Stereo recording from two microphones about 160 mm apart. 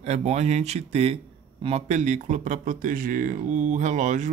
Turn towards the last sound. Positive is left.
turn(degrees=-50)  # may be behind; listen again after turning